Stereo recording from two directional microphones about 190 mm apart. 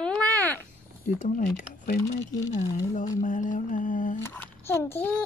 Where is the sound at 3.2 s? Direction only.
45° left (ahead or behind).